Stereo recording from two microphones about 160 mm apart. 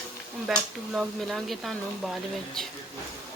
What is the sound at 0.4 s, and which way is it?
Speech, centre (ahead or behind).